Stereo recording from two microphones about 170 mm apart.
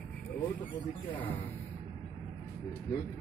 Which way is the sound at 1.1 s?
10° left (ahead or behind).